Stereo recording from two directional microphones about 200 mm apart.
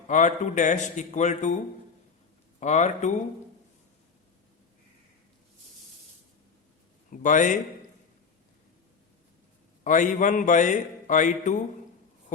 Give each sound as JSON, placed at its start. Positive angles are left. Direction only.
{"t": 0.1, "sound": "speech", "side_deg": 35}
{"t": 2.6, "sound": "speech", "side_deg": 35}
{"t": 7.1, "sound": "speech", "side_deg": 40}
{"t": 9.8, "sound": "speech", "side_deg": 40}